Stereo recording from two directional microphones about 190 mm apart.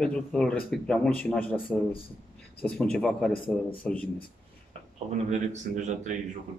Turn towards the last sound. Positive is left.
turn(degrees=-40)  # may be behind; listen again after turning